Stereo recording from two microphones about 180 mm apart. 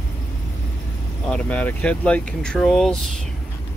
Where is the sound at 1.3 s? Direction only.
10° left (ahead or behind).